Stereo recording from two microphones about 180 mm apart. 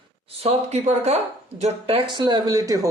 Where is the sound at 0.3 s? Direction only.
35° right (ahead or behind).